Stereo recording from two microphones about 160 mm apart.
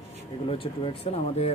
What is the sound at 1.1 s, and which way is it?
Speech, 35° left (ahead or behind).